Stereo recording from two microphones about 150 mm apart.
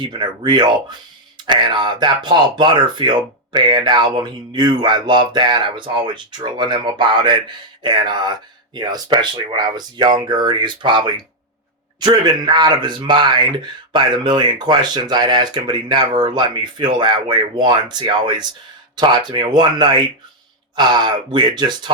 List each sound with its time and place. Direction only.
0.1 s speech: 30° right (ahead or behind)